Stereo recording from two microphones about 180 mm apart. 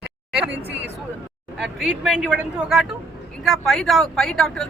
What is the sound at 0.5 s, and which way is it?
Speech, 70° right (ahead or behind).